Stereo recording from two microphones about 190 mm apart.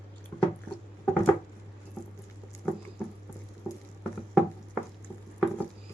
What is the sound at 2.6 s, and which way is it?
Patter, 5° left (ahead or behind).